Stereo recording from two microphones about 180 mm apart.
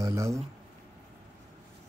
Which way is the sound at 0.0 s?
15° right (ahead or behind).